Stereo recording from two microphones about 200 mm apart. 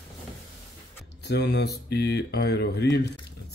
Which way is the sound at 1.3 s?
60° left (ahead or behind).